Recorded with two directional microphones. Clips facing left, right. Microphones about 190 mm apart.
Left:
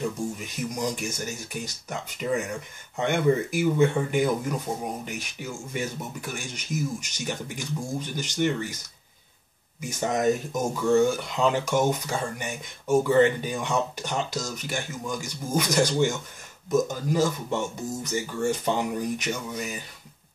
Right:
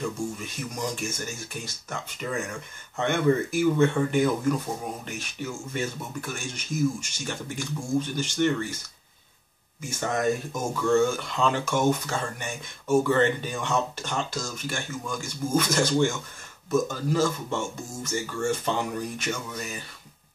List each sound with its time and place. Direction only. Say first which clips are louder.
0.7 s speech: even; 15° left (ahead or behind)
9.8 s speech: left 2 dB; 15° left (ahead or behind)